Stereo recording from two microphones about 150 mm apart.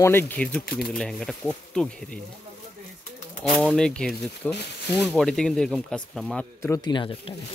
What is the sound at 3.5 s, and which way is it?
Speech, 5° left (ahead or behind).